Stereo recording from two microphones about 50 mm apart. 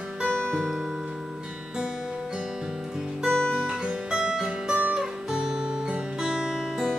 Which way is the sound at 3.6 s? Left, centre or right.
Centre.